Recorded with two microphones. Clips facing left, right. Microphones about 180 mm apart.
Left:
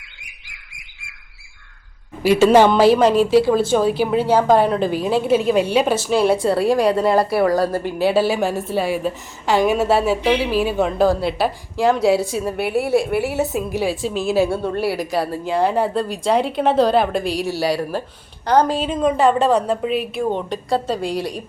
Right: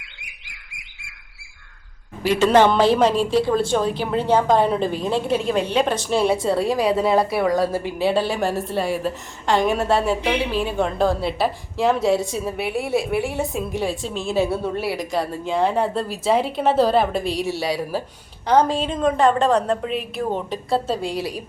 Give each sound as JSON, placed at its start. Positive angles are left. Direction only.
{"t": 2.2, "sound": "a woman's voice", "side_deg": 10}